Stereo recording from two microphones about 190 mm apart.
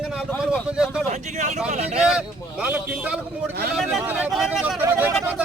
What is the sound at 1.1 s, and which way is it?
Speech, 40° right (ahead or behind).